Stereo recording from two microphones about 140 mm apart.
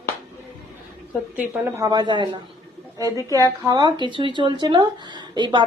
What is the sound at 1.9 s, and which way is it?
Speech, 30° right (ahead or behind).